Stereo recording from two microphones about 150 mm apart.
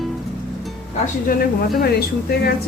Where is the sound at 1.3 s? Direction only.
85° left.